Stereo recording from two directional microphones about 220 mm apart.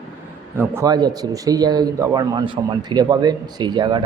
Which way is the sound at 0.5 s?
10° right (ahead or behind).